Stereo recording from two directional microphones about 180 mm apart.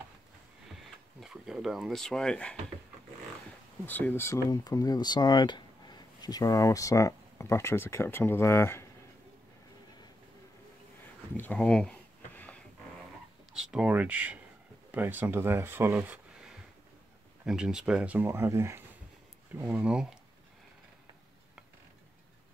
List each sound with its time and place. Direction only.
0.7 s speech: centre (ahead or behind)
3.8 s speech: 10° left (ahead or behind)
11.3 s a sound: 10° left (ahead or behind)
13.5 s speech: 5° right (ahead or behind)